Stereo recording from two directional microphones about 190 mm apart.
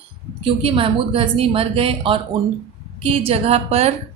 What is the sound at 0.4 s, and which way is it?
A woman's voice, 30° right (ahead or behind).